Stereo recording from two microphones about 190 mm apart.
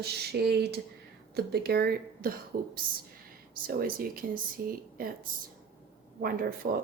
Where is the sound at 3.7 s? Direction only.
50° right (ahead or behind).